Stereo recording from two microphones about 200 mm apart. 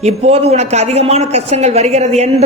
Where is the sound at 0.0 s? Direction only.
30° right (ahead or behind).